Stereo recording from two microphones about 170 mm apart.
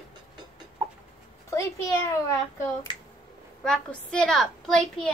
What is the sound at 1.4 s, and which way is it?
Speech, 15° left (ahead or behind).